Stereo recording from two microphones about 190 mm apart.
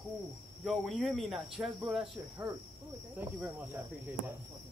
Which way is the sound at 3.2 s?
5° right (ahead or behind).